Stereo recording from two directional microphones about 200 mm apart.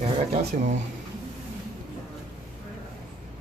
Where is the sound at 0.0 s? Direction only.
30° right (ahead or behind).